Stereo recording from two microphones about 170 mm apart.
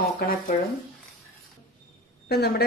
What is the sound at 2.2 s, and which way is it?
Speech, 70° left (ahead or behind).